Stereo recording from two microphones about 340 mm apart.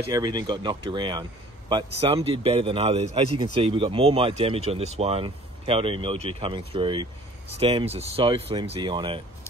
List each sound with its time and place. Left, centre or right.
0.1 s speech: centre